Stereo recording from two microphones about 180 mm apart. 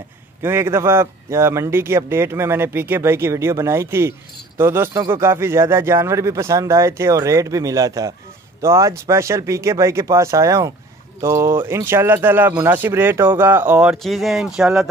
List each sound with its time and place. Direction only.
0.4 s a man's voice: 15° right (ahead or behind)